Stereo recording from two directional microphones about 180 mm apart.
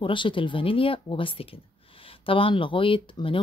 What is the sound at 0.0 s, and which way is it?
Speech, 25° left (ahead or behind).